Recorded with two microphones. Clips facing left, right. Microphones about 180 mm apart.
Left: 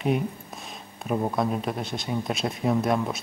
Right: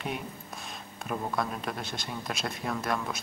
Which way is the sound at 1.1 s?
20° left (ahead or behind).